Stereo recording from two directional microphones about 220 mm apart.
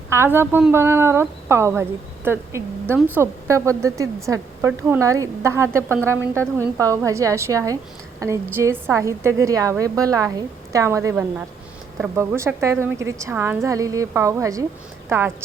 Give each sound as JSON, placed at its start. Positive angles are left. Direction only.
{"t": 0.1, "sound": "a woman's voice", "side_deg": -10}